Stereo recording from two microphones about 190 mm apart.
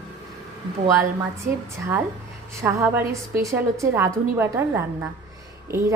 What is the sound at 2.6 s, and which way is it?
A woman's voice, 15° right (ahead or behind).